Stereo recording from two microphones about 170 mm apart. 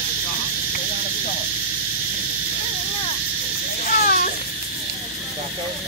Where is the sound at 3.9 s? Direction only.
55° left (ahead or behind).